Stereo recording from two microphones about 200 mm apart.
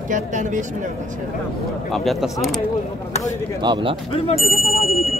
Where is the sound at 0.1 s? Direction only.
40° right (ahead or behind).